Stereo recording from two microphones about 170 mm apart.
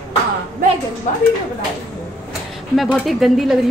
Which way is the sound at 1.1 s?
50° left (ahead or behind).